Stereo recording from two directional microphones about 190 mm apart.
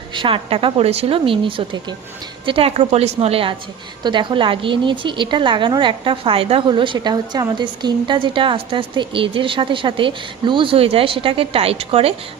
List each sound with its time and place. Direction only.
0.1 s a woman's voice: 25° right (ahead or behind)